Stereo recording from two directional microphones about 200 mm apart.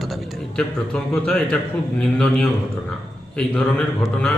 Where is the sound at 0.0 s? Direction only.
Centre (ahead or behind).